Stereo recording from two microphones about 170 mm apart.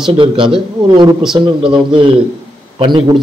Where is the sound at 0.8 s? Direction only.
25° right (ahead or behind).